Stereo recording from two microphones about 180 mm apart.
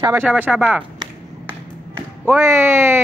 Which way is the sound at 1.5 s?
10° right (ahead or behind).